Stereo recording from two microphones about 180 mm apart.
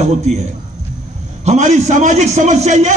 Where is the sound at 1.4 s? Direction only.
40° right (ahead or behind).